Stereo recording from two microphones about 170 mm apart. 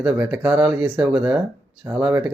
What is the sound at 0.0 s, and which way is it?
Speech, 5° right (ahead or behind).